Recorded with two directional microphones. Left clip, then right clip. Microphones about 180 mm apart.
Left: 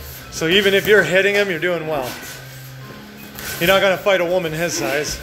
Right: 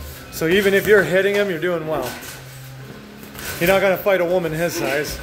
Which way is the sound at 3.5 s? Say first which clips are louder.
Left 1 dB; 20° right (ahead or behind).